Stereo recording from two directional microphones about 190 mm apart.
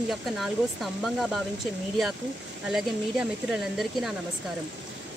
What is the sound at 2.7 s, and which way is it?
Speech, centre (ahead or behind).